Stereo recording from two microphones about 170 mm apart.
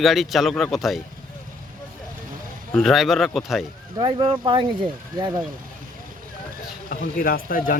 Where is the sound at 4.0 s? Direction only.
30° right (ahead or behind).